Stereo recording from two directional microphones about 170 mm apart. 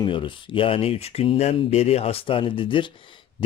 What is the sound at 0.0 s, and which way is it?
Speech, 30° left (ahead or behind).